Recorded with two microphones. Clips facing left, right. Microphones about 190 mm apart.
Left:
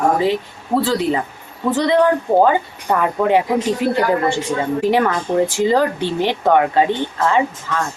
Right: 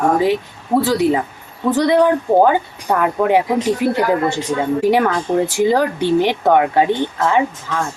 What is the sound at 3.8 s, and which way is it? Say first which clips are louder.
Speech: right 1 dB; 15° right (ahead or behind).